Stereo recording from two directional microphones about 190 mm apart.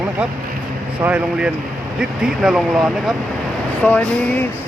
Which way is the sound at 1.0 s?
5° right (ahead or behind).